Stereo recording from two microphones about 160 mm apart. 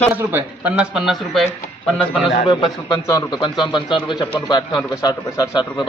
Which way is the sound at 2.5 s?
30° left (ahead or behind).